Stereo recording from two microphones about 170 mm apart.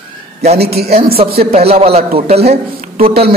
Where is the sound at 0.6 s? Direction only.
70° right (ahead or behind).